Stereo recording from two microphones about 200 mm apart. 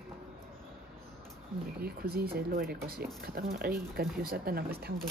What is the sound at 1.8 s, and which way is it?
Speech, 50° right (ahead or behind).